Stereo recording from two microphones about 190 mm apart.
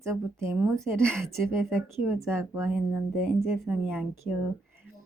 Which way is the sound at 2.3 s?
15° right (ahead or behind).